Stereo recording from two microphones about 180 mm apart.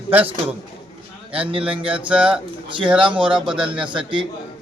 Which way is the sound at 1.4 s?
5° right (ahead or behind).